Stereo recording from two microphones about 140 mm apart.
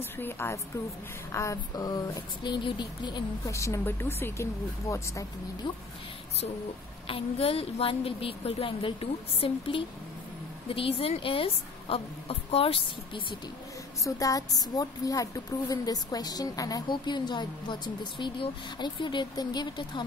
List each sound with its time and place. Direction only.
0.0 s a woman's voice: 15° left (ahead or behind)
7.1 s a woman's voice: 40° left (ahead or behind)
14.0 s a woman's voice: 25° left (ahead or behind)